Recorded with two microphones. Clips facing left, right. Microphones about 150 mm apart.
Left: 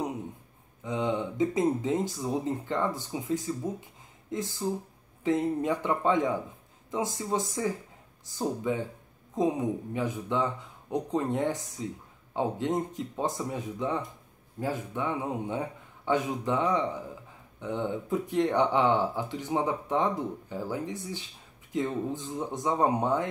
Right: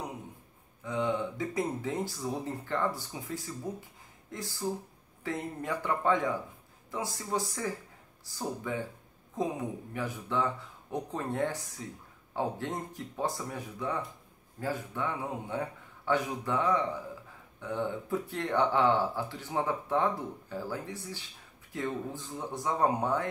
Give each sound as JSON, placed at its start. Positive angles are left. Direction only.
{"t": 0.8, "sound": "speech", "side_deg": 20}
{"t": 9.9, "sound": "speech", "side_deg": 20}